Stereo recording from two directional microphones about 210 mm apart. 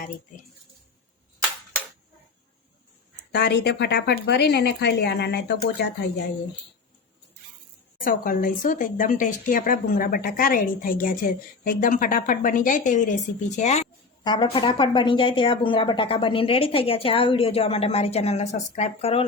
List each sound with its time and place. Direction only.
3.3 s speech: 55° left (ahead or behind)
8.0 s speech: 40° left (ahead or behind)
14.3 s speech: 20° left (ahead or behind)